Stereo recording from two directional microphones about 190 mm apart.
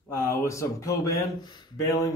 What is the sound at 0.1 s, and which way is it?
A man's voice, 10° left (ahead or behind).